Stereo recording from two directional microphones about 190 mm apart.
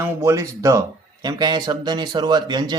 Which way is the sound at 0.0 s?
15° right (ahead or behind).